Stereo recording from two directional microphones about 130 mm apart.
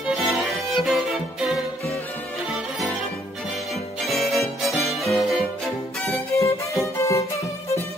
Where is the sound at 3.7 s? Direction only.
Centre (ahead or behind).